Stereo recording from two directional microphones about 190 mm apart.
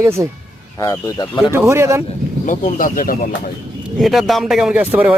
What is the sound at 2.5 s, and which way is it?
Speech, 45° left (ahead or behind).